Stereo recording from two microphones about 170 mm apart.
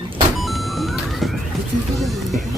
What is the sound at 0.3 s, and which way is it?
Music, centre (ahead or behind).